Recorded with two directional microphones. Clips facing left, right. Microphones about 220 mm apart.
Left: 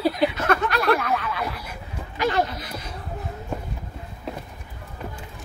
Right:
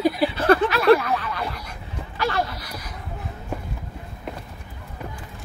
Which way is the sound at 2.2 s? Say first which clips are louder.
Left 2 dB; 20° left (ahead or behind).